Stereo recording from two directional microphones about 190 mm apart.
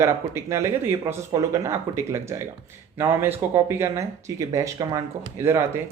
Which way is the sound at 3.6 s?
15° right (ahead or behind).